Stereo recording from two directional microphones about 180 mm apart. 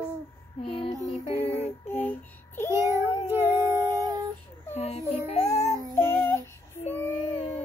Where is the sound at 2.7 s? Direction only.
15° right (ahead or behind).